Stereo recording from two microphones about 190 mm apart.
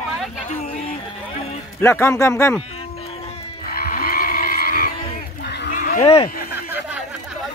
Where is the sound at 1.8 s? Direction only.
15° left (ahead or behind).